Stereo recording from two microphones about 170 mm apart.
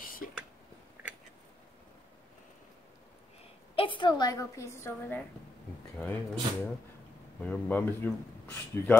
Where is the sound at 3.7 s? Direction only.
30° left (ahead or behind); by 6.1 s 10° left (ahead or behind).